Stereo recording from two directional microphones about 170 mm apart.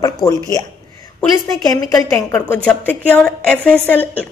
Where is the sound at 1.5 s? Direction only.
20° left (ahead or behind).